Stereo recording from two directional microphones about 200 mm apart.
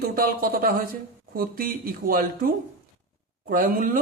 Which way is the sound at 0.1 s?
45° right (ahead or behind).